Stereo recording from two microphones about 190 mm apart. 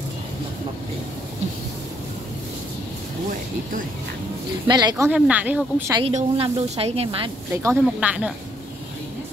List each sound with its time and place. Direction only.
4.6 s speech: 20° right (ahead or behind)
5.9 s speech: 30° right (ahead or behind)
7.5 s speech: 15° right (ahead or behind)